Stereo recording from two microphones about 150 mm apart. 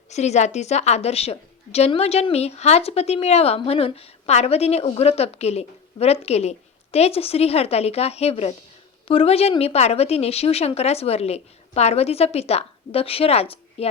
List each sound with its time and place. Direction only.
0.1 s a woman's voice: 50° left (ahead or behind)